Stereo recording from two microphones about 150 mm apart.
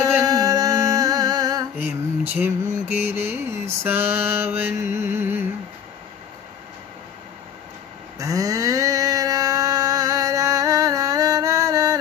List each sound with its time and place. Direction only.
0.0 s music: 25° right (ahead or behind)
1.8 s mantra: 15° right (ahead or behind)
8.2 s a sound: 20° right (ahead or behind)